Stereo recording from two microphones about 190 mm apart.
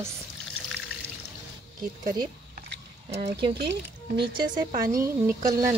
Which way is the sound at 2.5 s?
55° right (ahead or behind).